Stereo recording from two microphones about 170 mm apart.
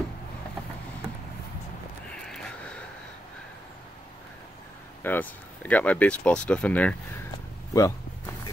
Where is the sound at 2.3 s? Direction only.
5° left (ahead or behind).